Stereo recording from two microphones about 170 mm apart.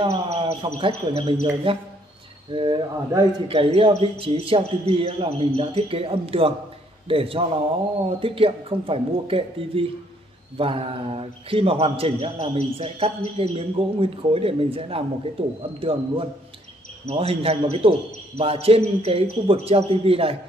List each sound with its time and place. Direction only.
0.0 s a man's voice: 30° right (ahead or behind)